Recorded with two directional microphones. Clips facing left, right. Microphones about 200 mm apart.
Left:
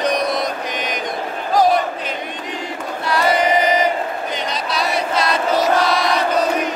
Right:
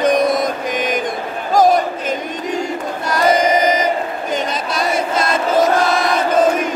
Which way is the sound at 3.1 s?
45° right (ahead or behind).